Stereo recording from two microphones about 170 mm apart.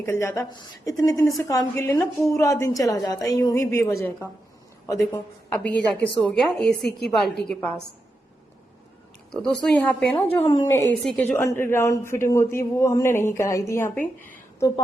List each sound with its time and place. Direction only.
0.0 s a woman's voice: 15° left (ahead or behind)
9.3 s speech: 5° left (ahead or behind)